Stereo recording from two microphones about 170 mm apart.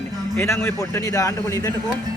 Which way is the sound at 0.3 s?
15° left (ahead or behind).